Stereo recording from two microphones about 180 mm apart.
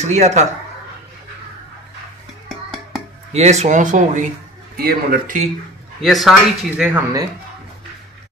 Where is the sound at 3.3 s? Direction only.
40° right (ahead or behind).